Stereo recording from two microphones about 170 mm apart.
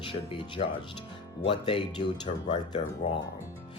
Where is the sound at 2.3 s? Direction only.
45° left (ahead or behind).